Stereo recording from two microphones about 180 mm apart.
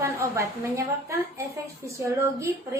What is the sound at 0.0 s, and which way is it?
A woman's voice, 15° right (ahead or behind).